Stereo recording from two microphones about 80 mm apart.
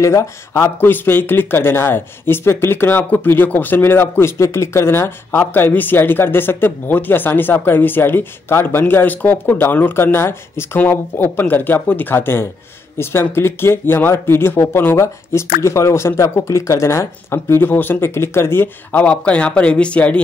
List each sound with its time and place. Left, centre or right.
0.0 s speech: left
0.7 s speech: left